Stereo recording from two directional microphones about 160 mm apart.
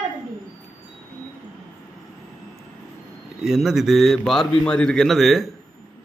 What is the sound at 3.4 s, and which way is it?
A man's voice, centre (ahead or behind).